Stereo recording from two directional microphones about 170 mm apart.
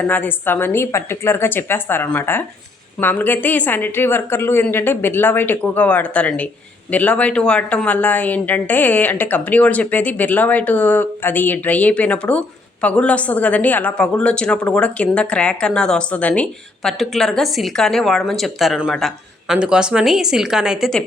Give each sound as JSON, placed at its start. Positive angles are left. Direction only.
{"t": 0.0, "sound": "a woman's voice", "side_deg": 10}